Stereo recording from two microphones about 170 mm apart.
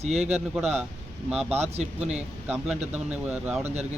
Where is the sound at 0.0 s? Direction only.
40° right (ahead or behind).